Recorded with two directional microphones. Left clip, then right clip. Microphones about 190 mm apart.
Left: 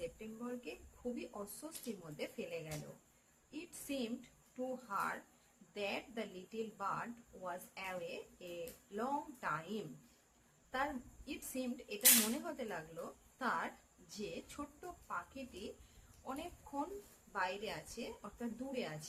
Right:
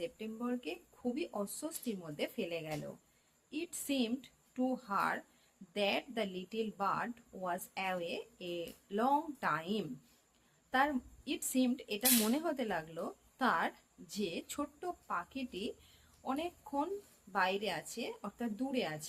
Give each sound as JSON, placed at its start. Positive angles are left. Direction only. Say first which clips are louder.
{"t": 0.0, "sound": "speech", "louder": "right 5 dB", "side_deg": -50}